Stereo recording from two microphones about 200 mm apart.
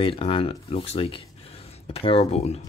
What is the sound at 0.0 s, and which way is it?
Speech, 30° left (ahead or behind).